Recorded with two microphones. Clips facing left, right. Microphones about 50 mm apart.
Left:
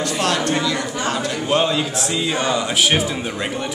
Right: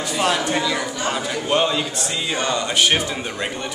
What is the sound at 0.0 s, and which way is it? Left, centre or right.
A man's voice, centre.